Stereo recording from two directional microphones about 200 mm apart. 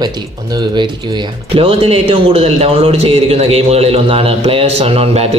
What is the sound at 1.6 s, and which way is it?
A man's voice, 30° right (ahead or behind).